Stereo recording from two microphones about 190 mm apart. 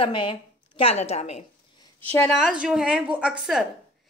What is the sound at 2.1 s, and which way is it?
A woman's voice, 5° left (ahead or behind).